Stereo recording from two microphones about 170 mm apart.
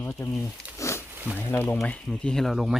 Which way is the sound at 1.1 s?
10° right (ahead or behind).